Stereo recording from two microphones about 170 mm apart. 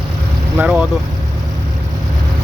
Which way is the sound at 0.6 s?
5° right (ahead or behind).